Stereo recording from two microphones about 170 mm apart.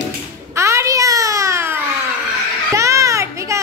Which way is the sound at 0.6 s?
15° right (ahead or behind).